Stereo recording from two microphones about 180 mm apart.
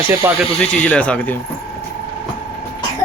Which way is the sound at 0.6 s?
5° left (ahead or behind).